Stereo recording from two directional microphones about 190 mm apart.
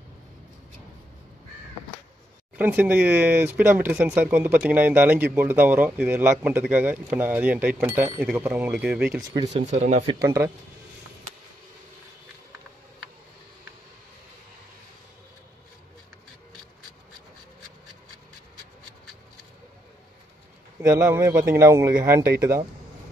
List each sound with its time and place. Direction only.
2.5 s speech: 10° right (ahead or behind)
9.5 s speech: 35° right (ahead or behind)
10.0 s speech: 15° right (ahead or behind)
20.9 s speech: 10° right (ahead or behind)